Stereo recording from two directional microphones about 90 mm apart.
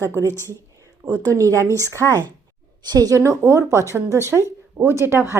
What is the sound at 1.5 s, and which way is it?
Speech, 35° right (ahead or behind).